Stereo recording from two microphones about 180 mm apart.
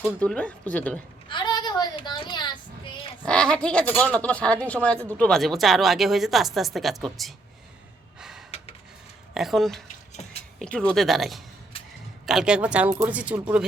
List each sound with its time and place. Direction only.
0.2 s speech: 5° left (ahead or behind)
1.3 s child singing: 25° left (ahead or behind)
3.2 s a woman's voice: 5° left (ahead or behind)
8.2 s a sound: 5° right (ahead or behind)
8.4 s a sound: 35° left (ahead or behind)
9.3 s a woman's voice: centre (ahead or behind)